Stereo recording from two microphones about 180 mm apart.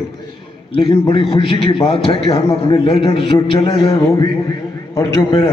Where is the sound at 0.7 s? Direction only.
30° left (ahead or behind).